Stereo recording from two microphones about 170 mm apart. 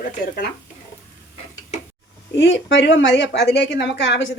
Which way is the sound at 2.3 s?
90° left.